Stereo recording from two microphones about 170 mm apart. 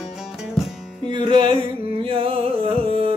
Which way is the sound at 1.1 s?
30° right (ahead or behind).